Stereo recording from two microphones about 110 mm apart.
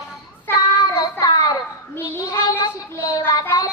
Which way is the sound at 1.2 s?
40° left (ahead or behind).